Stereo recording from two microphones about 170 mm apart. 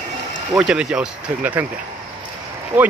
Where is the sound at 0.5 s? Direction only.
5° right (ahead or behind).